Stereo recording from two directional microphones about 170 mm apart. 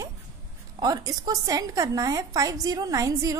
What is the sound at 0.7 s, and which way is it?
A woman's voice, 20° right (ahead or behind).